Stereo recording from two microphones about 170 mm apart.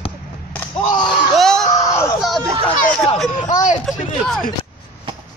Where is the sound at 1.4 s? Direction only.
Centre (ahead or behind).